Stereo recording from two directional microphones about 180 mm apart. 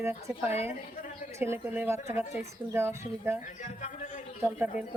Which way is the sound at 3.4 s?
40° left (ahead or behind).